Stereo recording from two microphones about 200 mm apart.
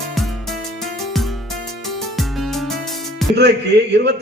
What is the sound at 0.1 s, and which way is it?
Music, centre (ahead or behind).